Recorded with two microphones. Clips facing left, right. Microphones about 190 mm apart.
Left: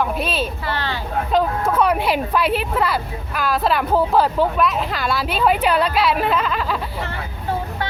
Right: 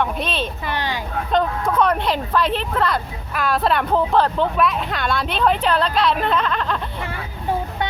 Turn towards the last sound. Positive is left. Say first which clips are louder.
# even
turn(degrees=5)  # may be behind; listen again after turning